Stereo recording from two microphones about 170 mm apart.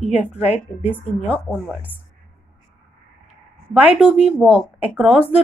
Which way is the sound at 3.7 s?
10° right (ahead or behind).